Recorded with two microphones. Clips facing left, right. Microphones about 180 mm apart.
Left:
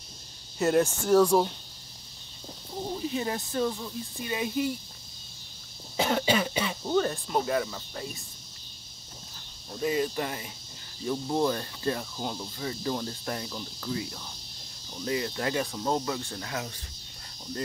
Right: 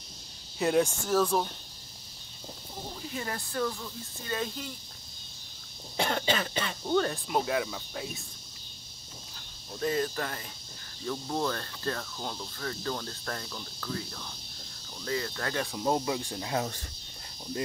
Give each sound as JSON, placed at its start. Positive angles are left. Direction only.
{"t": 0.6, "sound": "speech", "side_deg": 0}
{"t": 3.1, "sound": "cricket", "side_deg": 20}
{"t": 5.9, "sound": "speech", "side_deg": 5}
{"t": 9.8, "sound": "cricket", "side_deg": 5}
{"t": 15.8, "sound": "speech", "side_deg": -15}